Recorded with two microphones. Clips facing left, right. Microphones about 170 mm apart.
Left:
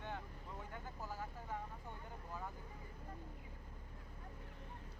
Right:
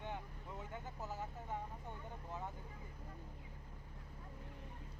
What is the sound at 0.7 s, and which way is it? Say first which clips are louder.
Vehicle: right 2 dB; 20° right (ahead or behind).